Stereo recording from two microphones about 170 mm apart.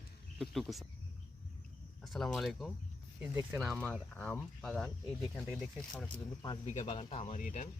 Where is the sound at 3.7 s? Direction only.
5° left (ahead or behind).